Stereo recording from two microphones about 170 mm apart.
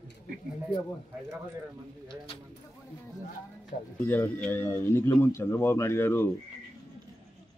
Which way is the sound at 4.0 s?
10° left (ahead or behind).